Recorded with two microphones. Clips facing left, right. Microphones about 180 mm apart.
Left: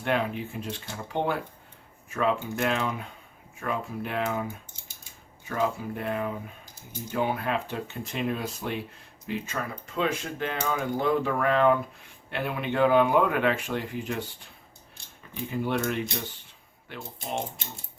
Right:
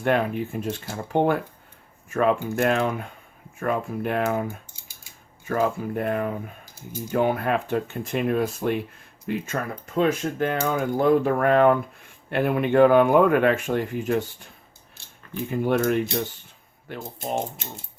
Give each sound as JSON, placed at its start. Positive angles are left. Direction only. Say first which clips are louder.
{"t": 0.0, "sound": "speech", "louder": "right 5 dB", "side_deg": -50}
{"t": 5.5, "sound": "speech", "louder": "right 4 dB", "side_deg": -50}
{"t": 15.4, "sound": "speech", "louder": "right 6 dB", "side_deg": -50}